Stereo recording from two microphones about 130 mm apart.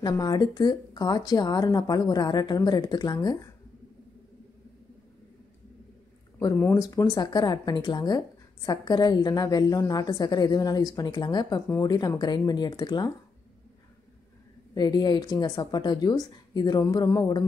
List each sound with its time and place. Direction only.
0.0 s a woman's voice: 30° left (ahead or behind)
6.4 s a woman's voice: 20° left (ahead or behind)
14.7 s a woman's voice: 30° left (ahead or behind)